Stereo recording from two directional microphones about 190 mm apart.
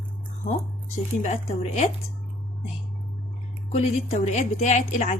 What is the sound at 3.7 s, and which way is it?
Speech, 35° left (ahead or behind).